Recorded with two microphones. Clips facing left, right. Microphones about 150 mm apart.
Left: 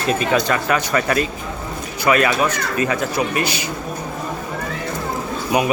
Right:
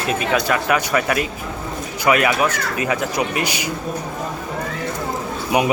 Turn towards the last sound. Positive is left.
turn(degrees=-20)  # may be behind; listen again after turning